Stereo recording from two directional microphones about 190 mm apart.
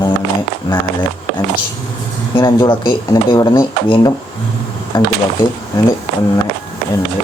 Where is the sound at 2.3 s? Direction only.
25° left (ahead or behind).